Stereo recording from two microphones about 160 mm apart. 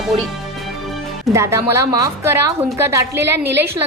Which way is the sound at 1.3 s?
15° right (ahead or behind).